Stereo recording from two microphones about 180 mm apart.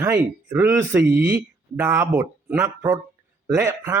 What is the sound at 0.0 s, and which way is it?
Speech, 15° right (ahead or behind).